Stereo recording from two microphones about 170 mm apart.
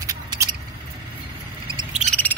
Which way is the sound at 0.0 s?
20° right (ahead or behind).